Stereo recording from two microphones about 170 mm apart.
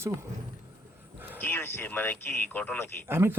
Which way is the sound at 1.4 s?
10° left (ahead or behind).